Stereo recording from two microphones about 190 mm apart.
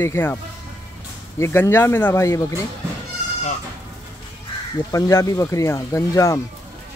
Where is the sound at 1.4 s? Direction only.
10° left (ahead or behind).